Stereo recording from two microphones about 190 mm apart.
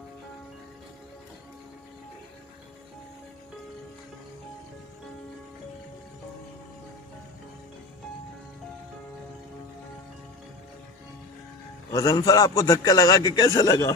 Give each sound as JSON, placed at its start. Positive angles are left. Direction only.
{"t": 11.9, "sound": "a man's voice", "side_deg": 15}